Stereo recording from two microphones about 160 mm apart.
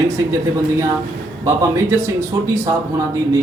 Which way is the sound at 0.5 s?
20° right (ahead or behind).